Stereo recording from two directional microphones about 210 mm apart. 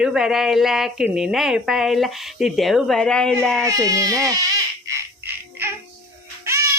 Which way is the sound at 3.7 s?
15° right (ahead or behind).